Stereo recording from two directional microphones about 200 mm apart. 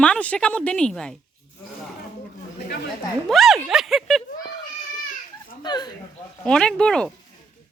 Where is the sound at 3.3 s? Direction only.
Centre (ahead or behind).